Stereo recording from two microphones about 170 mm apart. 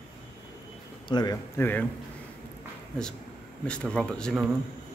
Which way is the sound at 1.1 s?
25° left (ahead or behind).